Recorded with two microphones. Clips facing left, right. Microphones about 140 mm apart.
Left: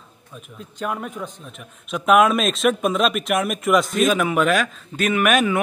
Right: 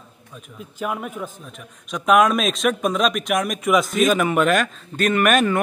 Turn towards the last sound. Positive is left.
turn(degrees=5)  # may be behind; listen again after turning